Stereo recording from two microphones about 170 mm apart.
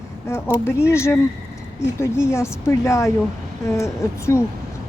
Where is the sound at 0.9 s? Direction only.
15° left (ahead or behind).